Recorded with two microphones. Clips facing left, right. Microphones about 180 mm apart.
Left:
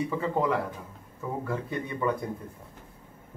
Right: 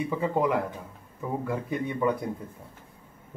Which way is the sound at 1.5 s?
15° right (ahead or behind).